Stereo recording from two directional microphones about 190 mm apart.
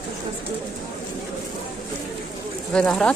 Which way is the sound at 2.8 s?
5° left (ahead or behind).